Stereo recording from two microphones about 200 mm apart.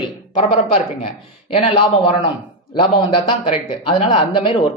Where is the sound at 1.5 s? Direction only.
30° left (ahead or behind).